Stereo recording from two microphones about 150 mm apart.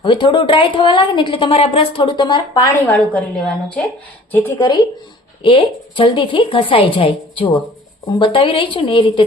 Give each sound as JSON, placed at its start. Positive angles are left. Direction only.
{"t": 0.0, "sound": "a woman's voice", "side_deg": 30}
{"t": 2.9, "sound": "a woman's voice", "side_deg": 10}
{"t": 5.4, "sound": "a woman's voice", "side_deg": 35}